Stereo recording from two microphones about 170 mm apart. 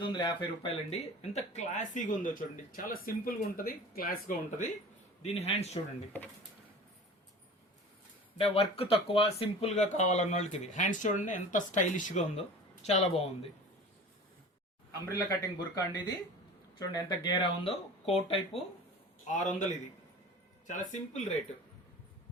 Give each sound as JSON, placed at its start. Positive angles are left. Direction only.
{"t": 0.0, "sound": "speech", "side_deg": 25}
{"t": 5.2, "sound": "speech", "side_deg": 35}
{"t": 8.4, "sound": "speech", "side_deg": 35}
{"t": 15.1, "sound": "speech", "side_deg": 20}
{"t": 19.3, "sound": "speech", "side_deg": 45}